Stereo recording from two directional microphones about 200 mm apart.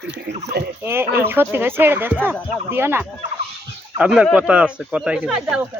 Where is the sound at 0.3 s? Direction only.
60° right (ahead or behind).